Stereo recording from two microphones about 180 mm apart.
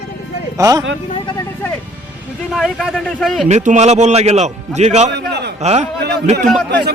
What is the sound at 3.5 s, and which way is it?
A man's voice, 40° right (ahead or behind).